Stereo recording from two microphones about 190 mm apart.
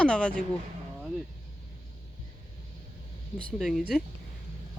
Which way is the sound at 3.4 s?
Centre (ahead or behind).